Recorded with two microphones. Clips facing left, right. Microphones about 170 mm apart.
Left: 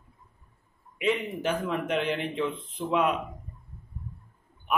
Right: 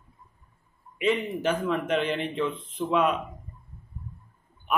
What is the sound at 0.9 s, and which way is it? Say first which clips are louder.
A man's voice: right 2 dB; 10° left (ahead or behind).